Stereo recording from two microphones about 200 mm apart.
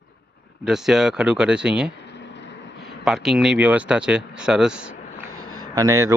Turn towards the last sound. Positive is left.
turn(degrees=-15)  # may be behind; listen again after turning